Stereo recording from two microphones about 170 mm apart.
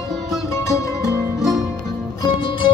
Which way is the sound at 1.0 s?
Centre (ahead or behind).